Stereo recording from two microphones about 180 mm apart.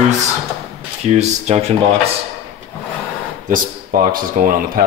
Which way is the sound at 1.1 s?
35° right (ahead or behind).